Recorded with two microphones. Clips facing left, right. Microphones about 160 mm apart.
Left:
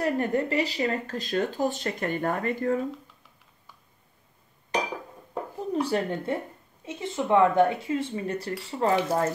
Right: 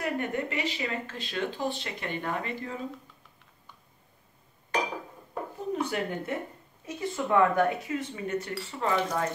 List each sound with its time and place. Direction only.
0.0 s speech: 35° left (ahead or behind)
5.7 s speech: 35° left (ahead or behind)